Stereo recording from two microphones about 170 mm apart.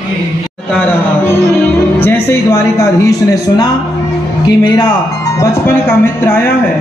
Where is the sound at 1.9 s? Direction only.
10° left (ahead or behind).